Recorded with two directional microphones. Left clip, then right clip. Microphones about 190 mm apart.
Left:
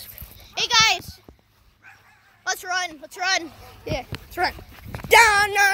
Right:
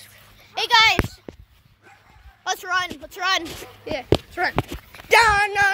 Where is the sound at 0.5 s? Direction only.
25° right (ahead or behind).